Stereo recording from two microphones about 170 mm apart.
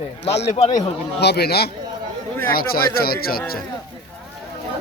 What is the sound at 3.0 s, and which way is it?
Speech, 65° left (ahead or behind).